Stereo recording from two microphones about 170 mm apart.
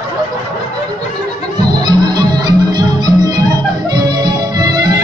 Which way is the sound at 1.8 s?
25° right (ahead or behind).